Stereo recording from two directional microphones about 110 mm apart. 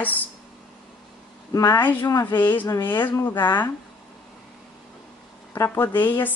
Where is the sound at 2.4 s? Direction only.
20° left (ahead or behind).